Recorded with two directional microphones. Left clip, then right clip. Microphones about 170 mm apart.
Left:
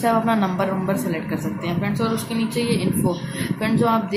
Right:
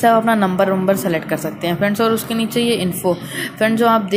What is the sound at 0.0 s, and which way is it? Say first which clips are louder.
A woman's voice: right 6 dB; 20° right (ahead or behind).